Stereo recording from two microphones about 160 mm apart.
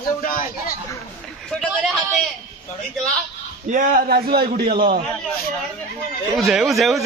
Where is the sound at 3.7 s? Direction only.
55° right (ahead or behind).